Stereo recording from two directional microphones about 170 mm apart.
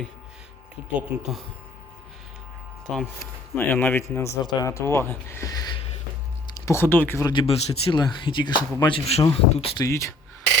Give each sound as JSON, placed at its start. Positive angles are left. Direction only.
{"t": 0.9, "sound": "speech", "side_deg": 0}
{"t": 3.5, "sound": "speech", "side_deg": 10}
{"t": 7.3, "sound": "speech", "side_deg": 30}
{"t": 9.0, "sound": "speech", "side_deg": 35}
{"t": 9.8, "sound": "speech", "side_deg": 15}